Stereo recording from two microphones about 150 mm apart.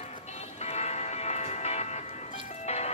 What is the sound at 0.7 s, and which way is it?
Music, 50° left (ahead or behind).